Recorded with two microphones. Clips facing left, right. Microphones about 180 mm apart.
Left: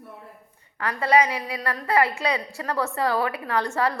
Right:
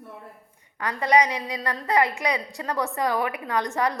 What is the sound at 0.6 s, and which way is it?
A woman's voice, 15° right (ahead or behind).